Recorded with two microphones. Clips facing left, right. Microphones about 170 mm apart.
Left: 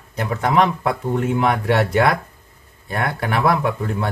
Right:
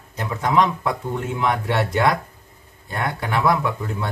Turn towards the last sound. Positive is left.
turn(degrees=60)  # may be behind; listen again after turning